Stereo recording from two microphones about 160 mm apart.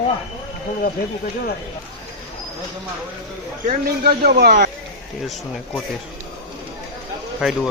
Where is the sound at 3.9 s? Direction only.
75° right (ahead or behind); by 4.7 s 90° right.